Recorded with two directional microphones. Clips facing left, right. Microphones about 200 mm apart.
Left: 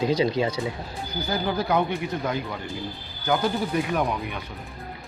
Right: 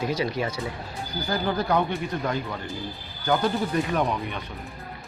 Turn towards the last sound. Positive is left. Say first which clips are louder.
# even
turn(degrees=10)  # may be behind; listen again after turning